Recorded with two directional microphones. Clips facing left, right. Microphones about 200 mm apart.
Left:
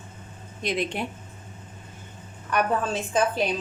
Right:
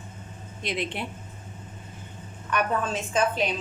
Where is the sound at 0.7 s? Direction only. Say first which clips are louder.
Left 3 dB; 45° left (ahead or behind).